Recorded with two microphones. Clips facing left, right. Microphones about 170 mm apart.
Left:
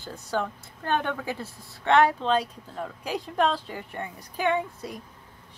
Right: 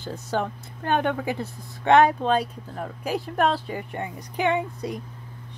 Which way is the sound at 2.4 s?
5° right (ahead or behind).